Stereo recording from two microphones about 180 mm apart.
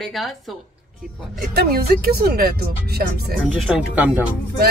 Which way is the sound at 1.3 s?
55° right (ahead or behind).